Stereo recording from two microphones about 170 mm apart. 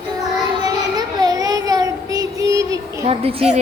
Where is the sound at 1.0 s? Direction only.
20° right (ahead or behind).